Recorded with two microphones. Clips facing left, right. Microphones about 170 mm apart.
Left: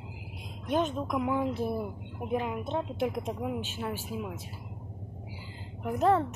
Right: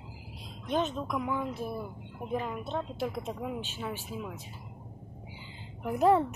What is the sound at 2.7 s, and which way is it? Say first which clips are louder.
Speech: left 3 dB; 20° left (ahead or behind).